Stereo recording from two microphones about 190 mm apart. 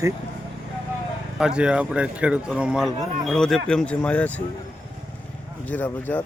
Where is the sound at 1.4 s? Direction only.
5° right (ahead or behind).